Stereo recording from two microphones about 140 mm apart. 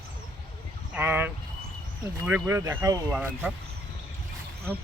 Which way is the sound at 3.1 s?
10° right (ahead or behind).